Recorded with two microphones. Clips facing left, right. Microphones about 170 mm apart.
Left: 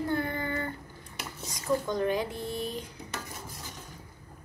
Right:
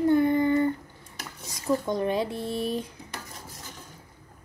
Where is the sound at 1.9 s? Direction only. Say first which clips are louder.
Right 2 dB; 20° right (ahead or behind).